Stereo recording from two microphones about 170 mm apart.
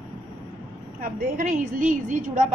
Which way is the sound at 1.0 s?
50° right (ahead or behind).